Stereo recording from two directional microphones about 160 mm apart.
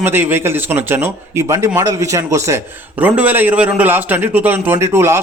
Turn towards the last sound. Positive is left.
turn(degrees=-15)  # may be behind; listen again after turning